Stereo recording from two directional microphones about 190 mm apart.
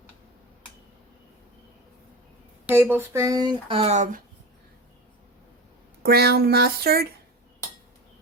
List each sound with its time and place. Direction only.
2.6 s speech: 10° right (ahead or behind); by 4.2 s 40° right (ahead or behind)
6.0 s speech: 55° right (ahead or behind)